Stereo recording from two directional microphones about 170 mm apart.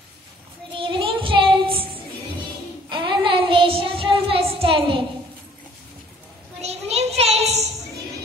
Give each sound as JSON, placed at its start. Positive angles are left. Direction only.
{"t": 0.7, "sound": "child singing", "side_deg": -30}
{"t": 2.9, "sound": "child singing", "side_deg": -30}
{"t": 6.6, "sound": "child singing", "side_deg": -40}